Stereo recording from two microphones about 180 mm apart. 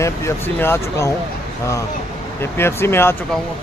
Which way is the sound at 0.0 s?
15° left (ahead or behind).